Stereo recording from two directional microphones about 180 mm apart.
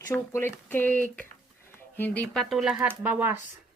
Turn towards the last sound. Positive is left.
turn(degrees=-10)  # may be behind; listen again after turning